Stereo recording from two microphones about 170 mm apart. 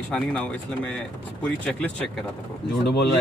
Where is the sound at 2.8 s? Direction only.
80° left.